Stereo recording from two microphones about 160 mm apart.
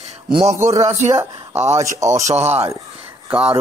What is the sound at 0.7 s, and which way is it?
Speech, 45° right (ahead or behind).